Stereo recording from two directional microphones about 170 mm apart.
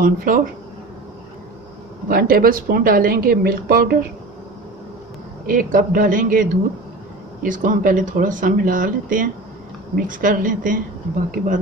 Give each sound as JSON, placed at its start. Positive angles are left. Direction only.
{"t": 0.0, "sound": "speech", "side_deg": -55}
{"t": 2.0, "sound": "speech", "side_deg": -60}
{"t": 5.5, "sound": "speech", "side_deg": -55}